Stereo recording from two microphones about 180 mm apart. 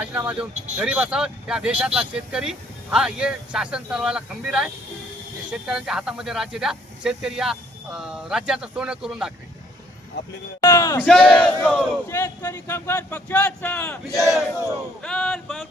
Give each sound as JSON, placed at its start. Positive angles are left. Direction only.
{"t": 0.0, "sound": "speech", "side_deg": -10}
{"t": 10.6, "sound": "speech", "side_deg": 15}
{"t": 11.0, "sound": "speech", "side_deg": 5}
{"t": 15.0, "sound": "speech", "side_deg": 5}